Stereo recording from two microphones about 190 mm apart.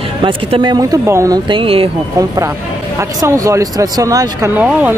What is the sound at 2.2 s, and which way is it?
Speech, 15° right (ahead or behind).